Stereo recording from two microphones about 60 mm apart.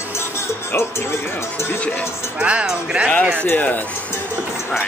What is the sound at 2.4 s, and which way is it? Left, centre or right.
Speech, centre.